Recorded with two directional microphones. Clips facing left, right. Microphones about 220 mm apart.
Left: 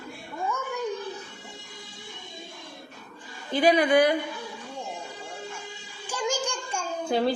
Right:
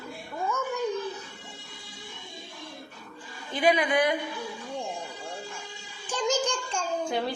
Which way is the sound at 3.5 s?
35° left (ahead or behind).